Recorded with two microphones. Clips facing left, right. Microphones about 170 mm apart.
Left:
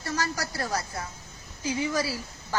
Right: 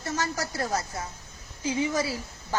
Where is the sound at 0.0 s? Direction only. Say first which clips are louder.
Right 1 dB; 20° right (ahead or behind).